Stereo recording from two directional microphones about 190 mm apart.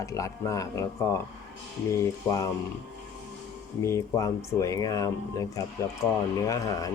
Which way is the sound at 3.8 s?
15° left (ahead or behind).